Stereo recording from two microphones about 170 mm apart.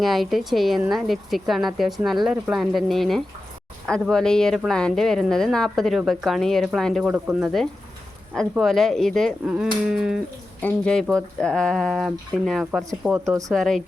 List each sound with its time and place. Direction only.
0.0 s speech: centre (ahead or behind)
10.6 s speech: 10° left (ahead or behind)
12.9 s speech: 15° right (ahead or behind)
13.5 s speech: centre (ahead or behind)